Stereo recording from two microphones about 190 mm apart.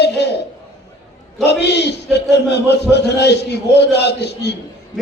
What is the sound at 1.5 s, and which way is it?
A man's voice, 60° left (ahead or behind).